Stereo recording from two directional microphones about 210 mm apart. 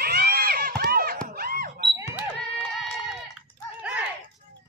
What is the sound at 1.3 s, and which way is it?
Alarm, 45° right (ahead or behind).